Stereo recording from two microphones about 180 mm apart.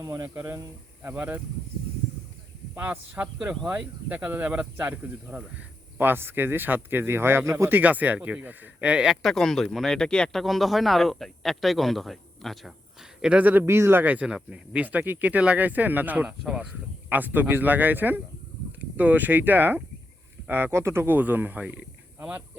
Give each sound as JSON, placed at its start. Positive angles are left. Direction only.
{"t": 0.0, "sound": "speech", "side_deg": -15}
{"t": 2.7, "sound": "speech", "side_deg": -10}